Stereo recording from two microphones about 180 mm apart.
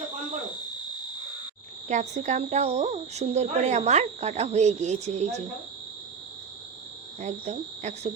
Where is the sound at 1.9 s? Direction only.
45° right (ahead or behind).